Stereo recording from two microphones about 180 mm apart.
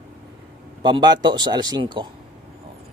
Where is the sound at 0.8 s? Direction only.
25° right (ahead or behind).